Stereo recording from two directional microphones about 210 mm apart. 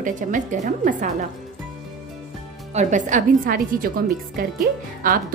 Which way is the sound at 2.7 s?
35° right (ahead or behind).